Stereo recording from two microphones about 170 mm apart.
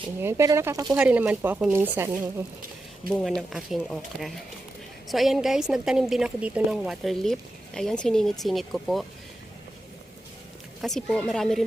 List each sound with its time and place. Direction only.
0.2 s speech: 15° right (ahead or behind)
0.9 s speech: 5° right (ahead or behind)
3.1 s a woman's voice: 5° left (ahead or behind)
10.8 s a woman's voice: centre (ahead or behind)